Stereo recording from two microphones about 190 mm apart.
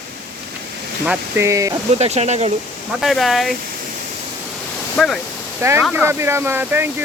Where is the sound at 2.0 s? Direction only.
35° right (ahead or behind).